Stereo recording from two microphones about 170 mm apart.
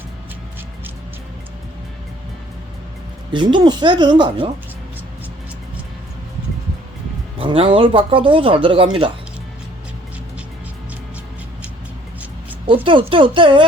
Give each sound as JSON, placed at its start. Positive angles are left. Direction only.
{"t": 3.3, "sound": "speech", "side_deg": -25}
{"t": 7.3, "sound": "speech", "side_deg": -30}
{"t": 12.6, "sound": "speech", "side_deg": -30}